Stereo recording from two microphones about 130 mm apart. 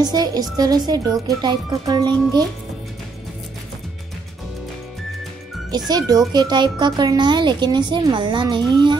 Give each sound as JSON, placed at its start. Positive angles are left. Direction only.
{"t": 0.0, "sound": "speech", "side_deg": -30}
{"t": 5.9, "sound": "speech", "side_deg": -30}